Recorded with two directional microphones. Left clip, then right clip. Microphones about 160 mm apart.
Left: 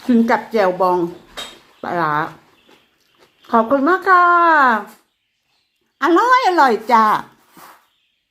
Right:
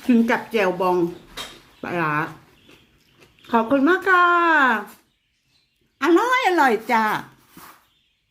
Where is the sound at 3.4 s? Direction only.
15° right (ahead or behind).